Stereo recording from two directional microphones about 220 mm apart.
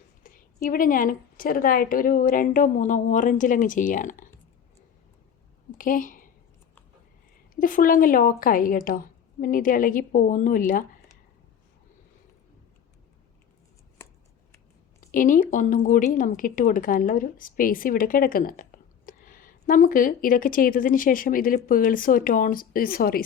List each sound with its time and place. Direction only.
0.2 s a woman's voice: 40° left (ahead or behind)
5.7 s a woman's voice: 40° left (ahead or behind)
7.5 s a woman's voice: 40° left (ahead or behind)
15.0 s a woman's voice: 40° left (ahead or behind)